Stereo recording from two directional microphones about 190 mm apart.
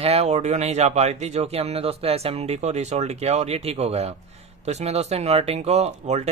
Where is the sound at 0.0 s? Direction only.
35° right (ahead or behind).